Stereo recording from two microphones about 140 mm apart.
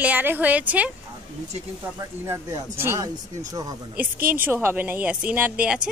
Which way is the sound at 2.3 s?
20° right (ahead or behind).